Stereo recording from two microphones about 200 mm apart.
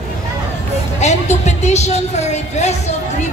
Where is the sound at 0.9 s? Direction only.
35° left (ahead or behind).